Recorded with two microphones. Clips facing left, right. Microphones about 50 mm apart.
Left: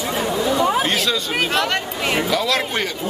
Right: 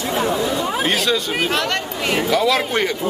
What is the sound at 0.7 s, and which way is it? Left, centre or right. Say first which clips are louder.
Speech: right 1 dB; centre.